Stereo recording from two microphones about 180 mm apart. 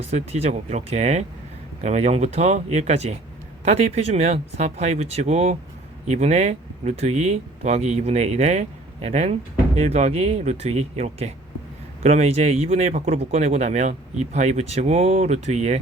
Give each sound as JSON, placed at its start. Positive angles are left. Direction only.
{"t": 0.0, "sound": "speech", "side_deg": -35}